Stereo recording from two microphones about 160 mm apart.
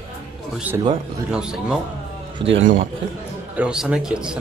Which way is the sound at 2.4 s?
30° right (ahead or behind).